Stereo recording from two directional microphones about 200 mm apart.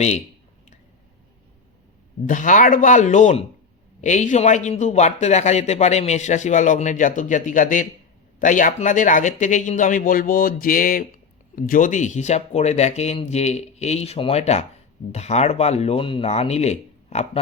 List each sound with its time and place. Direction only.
2.2 s a man's voice: 40° left (ahead or behind)